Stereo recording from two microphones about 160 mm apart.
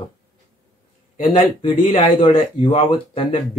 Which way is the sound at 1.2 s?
35° left (ahead or behind).